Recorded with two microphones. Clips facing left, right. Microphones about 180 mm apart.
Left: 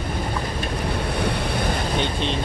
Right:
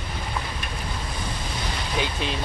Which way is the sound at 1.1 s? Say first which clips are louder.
Left 9 dB; 65° left (ahead or behind).